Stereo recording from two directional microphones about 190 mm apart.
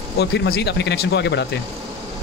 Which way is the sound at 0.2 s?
60° left (ahead or behind).